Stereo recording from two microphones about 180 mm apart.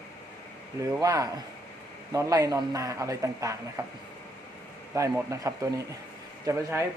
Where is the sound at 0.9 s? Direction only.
20° right (ahead or behind).